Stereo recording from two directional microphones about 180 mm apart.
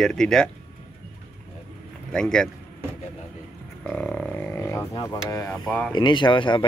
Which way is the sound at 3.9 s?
5° left (ahead or behind).